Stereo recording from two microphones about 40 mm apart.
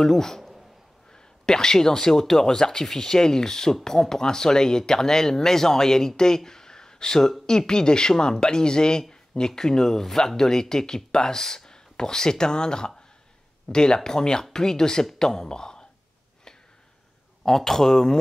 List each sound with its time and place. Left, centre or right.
0.0 s speech: centre
17.5 s speech: centre